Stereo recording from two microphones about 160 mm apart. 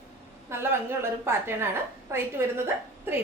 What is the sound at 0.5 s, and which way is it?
A woman's voice, 15° right (ahead or behind).